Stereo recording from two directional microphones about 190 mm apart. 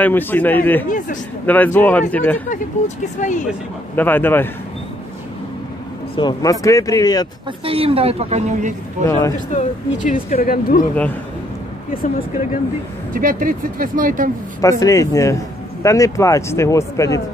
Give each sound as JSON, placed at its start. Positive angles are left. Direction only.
{"t": 0.0, "sound": "speech", "side_deg": 10}
{"t": 0.8, "sound": "speech", "side_deg": 45}
{"t": 1.4, "sound": "speech", "side_deg": 10}
{"t": 3.2, "sound": "speech", "side_deg": 40}
{"t": 3.9, "sound": "speech", "side_deg": 10}
{"t": 6.1, "sound": "speech", "side_deg": 20}
{"t": 7.6, "sound": "a woman's voice", "side_deg": -30}
{"t": 9.5, "sound": "speech", "side_deg": 40}
{"t": 11.9, "sound": "speech", "side_deg": 50}
{"t": 13.1, "sound": "speech", "side_deg": -45}
{"t": 14.6, "sound": "speech", "side_deg": 15}